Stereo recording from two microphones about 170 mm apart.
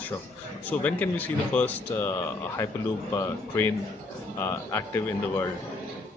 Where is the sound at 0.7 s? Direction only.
10° left (ahead or behind).